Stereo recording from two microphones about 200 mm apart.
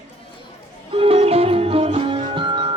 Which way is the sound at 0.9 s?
30° right (ahead or behind).